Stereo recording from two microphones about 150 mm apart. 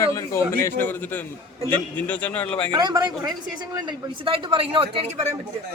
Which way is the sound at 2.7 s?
30° right (ahead or behind).